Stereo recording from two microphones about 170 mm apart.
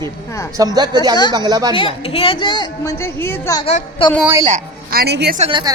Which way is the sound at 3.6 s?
35° left (ahead or behind).